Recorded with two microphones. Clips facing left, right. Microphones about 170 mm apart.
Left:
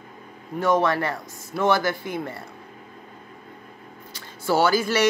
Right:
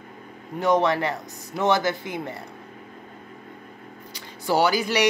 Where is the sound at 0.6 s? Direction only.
20° right (ahead or behind).